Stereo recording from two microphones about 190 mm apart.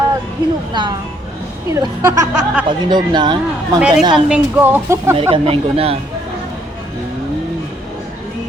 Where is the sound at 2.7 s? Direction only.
25° right (ahead or behind).